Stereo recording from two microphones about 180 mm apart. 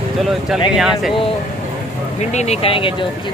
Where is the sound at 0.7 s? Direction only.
Centre (ahead or behind).